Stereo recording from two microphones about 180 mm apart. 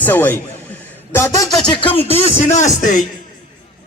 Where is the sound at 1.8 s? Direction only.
30° left (ahead or behind).